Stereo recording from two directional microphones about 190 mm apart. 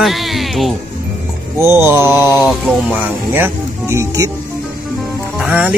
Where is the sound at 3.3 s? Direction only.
10° right (ahead or behind).